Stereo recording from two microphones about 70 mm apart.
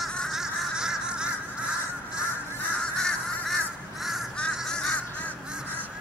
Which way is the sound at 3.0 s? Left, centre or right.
Centre.